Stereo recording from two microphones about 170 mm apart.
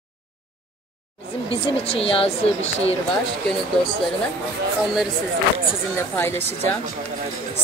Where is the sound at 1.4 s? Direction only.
35° left (ahead or behind).